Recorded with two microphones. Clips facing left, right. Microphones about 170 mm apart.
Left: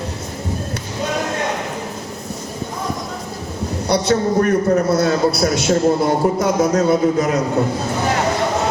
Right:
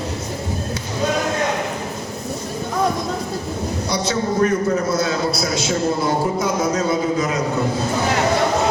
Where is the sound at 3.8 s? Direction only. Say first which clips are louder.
Left 6 dB; 60° left (ahead or behind).